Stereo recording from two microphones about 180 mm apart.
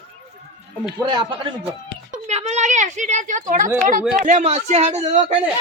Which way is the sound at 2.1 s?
40° right (ahead or behind).